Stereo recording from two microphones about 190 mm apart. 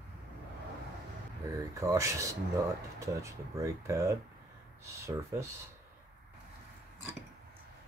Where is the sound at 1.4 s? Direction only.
15° right (ahead or behind).